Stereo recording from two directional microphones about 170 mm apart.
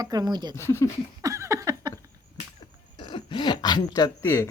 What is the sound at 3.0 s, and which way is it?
Throat clearing, 30° left (ahead or behind).